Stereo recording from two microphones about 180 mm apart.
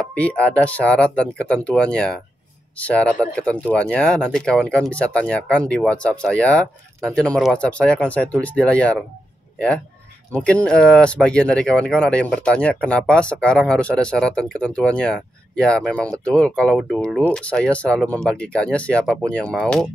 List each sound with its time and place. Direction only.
0.1 s speech: 5° left (ahead or behind)
10.3 s speech: 5° left (ahead or behind)